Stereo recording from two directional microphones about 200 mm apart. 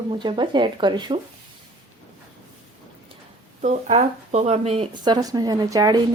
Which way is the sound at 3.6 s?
35° right (ahead or behind).